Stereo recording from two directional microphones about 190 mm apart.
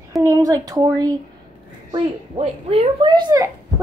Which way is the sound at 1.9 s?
30° right (ahead or behind).